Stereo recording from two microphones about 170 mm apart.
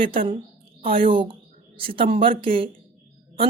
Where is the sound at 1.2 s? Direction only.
30° right (ahead or behind).